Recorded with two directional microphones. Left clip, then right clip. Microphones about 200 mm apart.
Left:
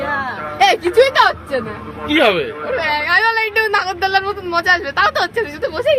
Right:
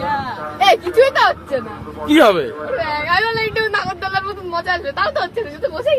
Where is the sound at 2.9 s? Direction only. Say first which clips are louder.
Left 4 dB; 50° left (ahead or behind).